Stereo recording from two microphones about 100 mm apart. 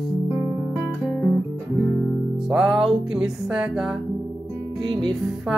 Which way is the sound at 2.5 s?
10° right (ahead or behind).